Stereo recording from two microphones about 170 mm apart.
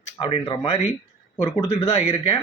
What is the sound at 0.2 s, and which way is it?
Speech, 30° left (ahead or behind).